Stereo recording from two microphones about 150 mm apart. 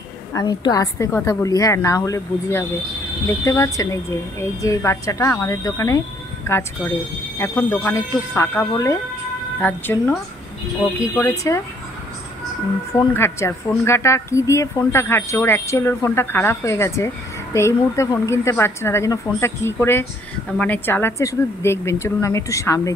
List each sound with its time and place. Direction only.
0.3 s a woman's voice: 25° left (ahead or behind)
12.9 s a woman's voice: 20° left (ahead or behind)